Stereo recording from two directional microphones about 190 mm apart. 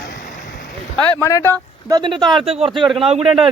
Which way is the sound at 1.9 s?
25° right (ahead or behind).